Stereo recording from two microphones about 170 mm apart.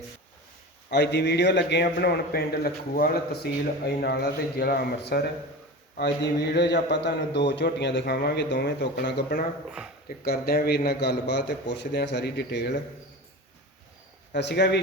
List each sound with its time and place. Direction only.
0.9 s a man's voice: 80° left
9.6 s speech: 5° right (ahead or behind)
10.1 s a man's voice: 65° left (ahead or behind); by 12.7 s 80° left
14.3 s speech: 90° left